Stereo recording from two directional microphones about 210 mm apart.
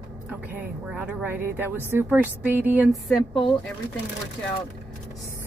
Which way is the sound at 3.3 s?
25° left (ahead or behind).